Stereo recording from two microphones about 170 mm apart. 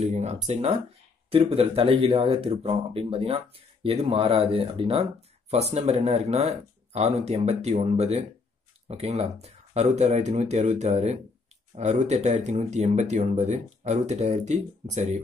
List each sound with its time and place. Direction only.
0.0 s speech: 40° right (ahead or behind)